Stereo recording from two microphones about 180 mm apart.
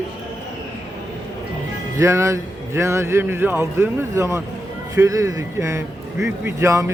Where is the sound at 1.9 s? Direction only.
15° right (ahead or behind).